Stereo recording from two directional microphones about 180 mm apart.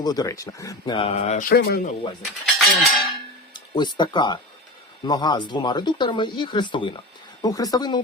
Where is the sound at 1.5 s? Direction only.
55° left (ahead or behind).